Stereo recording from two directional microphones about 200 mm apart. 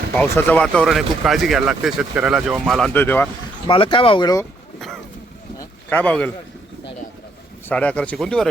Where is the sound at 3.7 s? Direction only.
25° left (ahead or behind).